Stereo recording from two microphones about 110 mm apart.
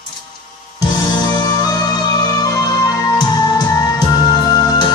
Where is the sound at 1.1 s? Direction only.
35° left (ahead or behind).